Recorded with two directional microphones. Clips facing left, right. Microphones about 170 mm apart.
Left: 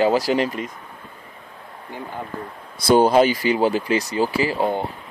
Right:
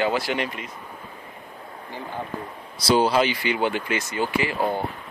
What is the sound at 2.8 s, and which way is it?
Speech, 50° left (ahead or behind).